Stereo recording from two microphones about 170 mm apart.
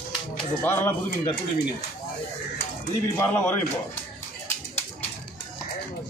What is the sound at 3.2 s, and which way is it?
Speech, 10° left (ahead or behind).